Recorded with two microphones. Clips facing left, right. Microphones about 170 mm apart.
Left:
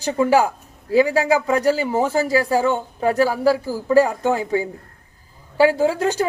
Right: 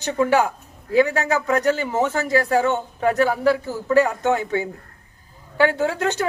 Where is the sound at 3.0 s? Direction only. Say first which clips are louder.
Left 1 dB; 30° left (ahead or behind).